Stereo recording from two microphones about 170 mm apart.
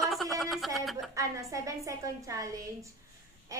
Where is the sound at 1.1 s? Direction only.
20° right (ahead or behind).